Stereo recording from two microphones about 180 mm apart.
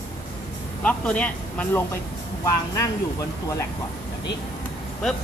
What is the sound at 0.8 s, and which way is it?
Speech, 5° left (ahead or behind).